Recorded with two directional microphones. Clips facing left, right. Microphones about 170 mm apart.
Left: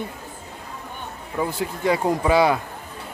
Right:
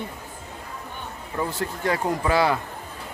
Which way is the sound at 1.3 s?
10° left (ahead or behind).